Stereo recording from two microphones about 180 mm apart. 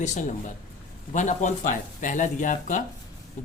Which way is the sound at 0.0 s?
40° left (ahead or behind).